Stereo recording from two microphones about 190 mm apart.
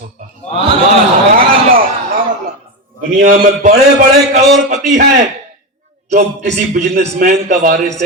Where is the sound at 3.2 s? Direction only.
45° right (ahead or behind).